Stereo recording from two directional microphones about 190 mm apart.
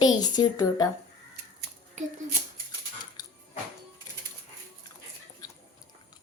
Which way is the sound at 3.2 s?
20° left (ahead or behind).